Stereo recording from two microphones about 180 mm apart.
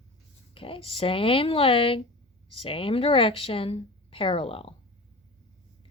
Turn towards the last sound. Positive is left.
turn(degrees=30)  # may be behind; listen again after turning